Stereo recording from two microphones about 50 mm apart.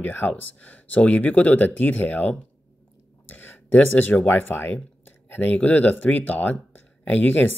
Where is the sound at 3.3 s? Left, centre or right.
Left.